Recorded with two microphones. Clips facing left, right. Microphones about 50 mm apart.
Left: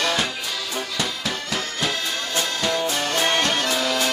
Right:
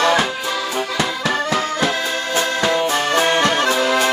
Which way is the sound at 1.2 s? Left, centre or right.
Right.